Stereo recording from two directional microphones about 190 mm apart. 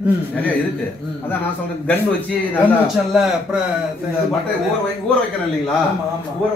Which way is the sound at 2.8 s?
5° right (ahead or behind).